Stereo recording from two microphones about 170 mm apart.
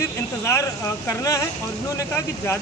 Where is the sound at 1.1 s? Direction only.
20° left (ahead or behind).